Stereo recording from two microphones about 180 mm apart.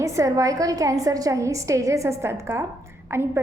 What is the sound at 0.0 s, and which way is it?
A woman's voice, 15° right (ahead or behind).